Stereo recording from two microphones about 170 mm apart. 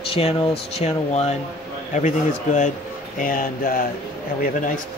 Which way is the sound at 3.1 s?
55° left (ahead or behind).